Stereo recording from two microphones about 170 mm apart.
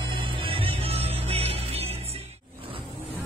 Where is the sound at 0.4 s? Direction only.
35° right (ahead or behind).